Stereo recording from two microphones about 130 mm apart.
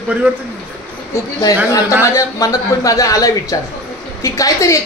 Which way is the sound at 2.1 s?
25° left (ahead or behind).